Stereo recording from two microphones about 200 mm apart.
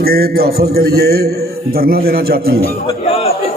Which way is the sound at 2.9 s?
30° left (ahead or behind).